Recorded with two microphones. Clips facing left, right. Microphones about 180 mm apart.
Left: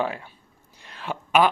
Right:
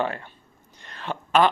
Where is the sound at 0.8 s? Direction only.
10° left (ahead or behind).